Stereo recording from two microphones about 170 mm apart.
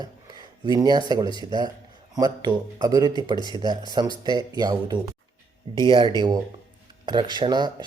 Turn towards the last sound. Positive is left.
turn(degrees=-25)  # may be behind; listen again after turning